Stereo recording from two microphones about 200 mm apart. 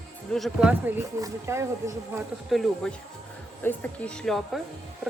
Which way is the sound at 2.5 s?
Centre (ahead or behind).